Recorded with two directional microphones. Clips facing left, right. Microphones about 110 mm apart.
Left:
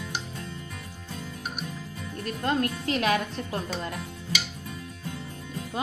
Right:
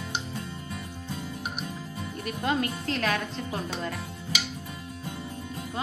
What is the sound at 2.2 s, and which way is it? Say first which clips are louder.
Speech: left 1 dB; 5° right (ahead or behind).